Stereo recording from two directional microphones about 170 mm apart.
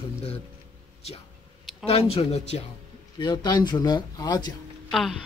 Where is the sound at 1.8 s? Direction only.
35° left (ahead or behind).